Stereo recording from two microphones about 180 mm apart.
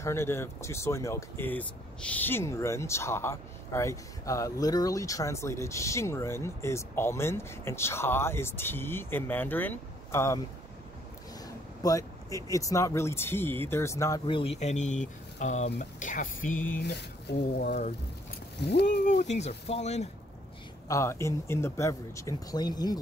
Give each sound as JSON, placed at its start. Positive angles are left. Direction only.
{"t": 0.0, "sound": "speech", "side_deg": 15}
{"t": 11.8, "sound": "speech", "side_deg": 20}
{"t": 14.2, "sound": "speech", "side_deg": 30}
{"t": 16.8, "sound": "speech", "side_deg": 65}
{"t": 17.6, "sound": "speech", "side_deg": 40}
{"t": 18.6, "sound": "speech", "side_deg": 70}
{"t": 19.3, "sound": "speech", "side_deg": 35}
{"t": 20.9, "sound": "speech", "side_deg": 15}